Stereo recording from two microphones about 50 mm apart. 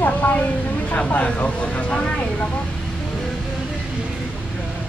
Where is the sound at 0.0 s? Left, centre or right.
Left.